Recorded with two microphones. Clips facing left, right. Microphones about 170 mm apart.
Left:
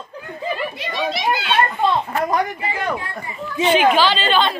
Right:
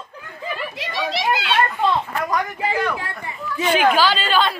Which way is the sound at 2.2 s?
35° left (ahead or behind).